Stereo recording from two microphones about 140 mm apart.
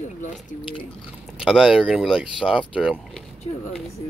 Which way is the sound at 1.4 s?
5° right (ahead or behind).